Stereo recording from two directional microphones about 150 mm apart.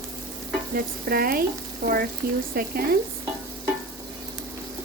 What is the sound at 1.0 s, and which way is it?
Frying, 80° right.